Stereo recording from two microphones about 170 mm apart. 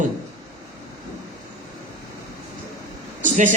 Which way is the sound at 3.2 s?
50° right (ahead or behind).